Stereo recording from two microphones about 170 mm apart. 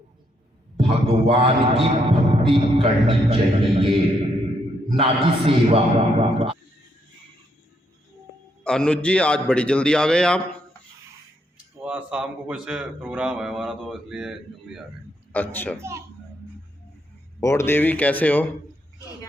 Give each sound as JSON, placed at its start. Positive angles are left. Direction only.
{"t": 0.8, "sound": "music", "side_deg": -35}
{"t": 4.9, "sound": "music", "side_deg": -35}
{"t": 8.6, "sound": "a man's voice", "side_deg": 5}
{"t": 11.5, "sound": "a man's voice", "side_deg": -10}
{"t": 15.3, "sound": "speech", "side_deg": 10}
{"t": 15.8, "sound": "a child's voice", "side_deg": -15}
{"t": 17.4, "sound": "speech", "side_deg": 15}